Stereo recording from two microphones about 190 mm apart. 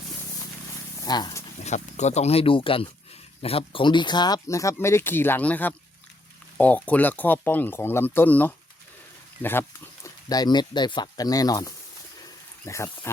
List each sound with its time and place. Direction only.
1.0 s speech: 20° left (ahead or behind)
1.6 s speech: 35° left (ahead or behind); by 12.9 s 15° left (ahead or behind)